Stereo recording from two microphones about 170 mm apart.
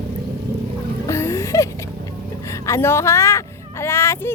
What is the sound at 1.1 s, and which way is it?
Music, 15° left (ahead or behind).